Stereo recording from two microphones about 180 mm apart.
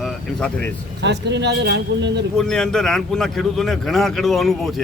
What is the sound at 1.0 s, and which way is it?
A man's voice, 75° right (ahead or behind).